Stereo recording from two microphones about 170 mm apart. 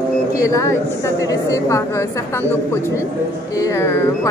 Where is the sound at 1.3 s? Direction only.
20° left (ahead or behind).